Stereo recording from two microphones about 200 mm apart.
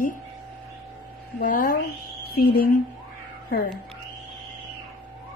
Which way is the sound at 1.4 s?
45° left (ahead or behind).